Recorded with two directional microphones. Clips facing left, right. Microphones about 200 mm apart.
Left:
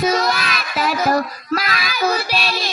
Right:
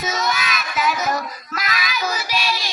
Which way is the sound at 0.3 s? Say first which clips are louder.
Left 2 dB; 55° left (ahead or behind).